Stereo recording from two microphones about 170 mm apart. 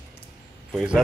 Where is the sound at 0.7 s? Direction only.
5° right (ahead or behind).